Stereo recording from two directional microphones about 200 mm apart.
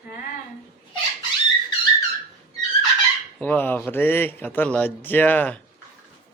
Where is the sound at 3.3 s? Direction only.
5° left (ahead or behind).